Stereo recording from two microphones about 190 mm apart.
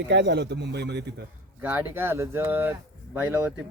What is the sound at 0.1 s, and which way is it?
Speech, 65° right (ahead or behind).